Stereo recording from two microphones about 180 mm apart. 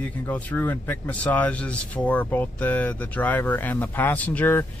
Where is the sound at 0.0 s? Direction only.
10° left (ahead or behind).